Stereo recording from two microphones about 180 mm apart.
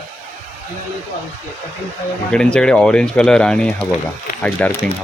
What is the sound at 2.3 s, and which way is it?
Speech, 5° left (ahead or behind).